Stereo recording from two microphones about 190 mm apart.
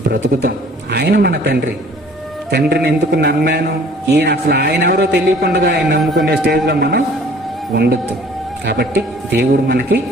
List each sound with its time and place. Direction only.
0.1 s a man's voice: 55° right (ahead or behind)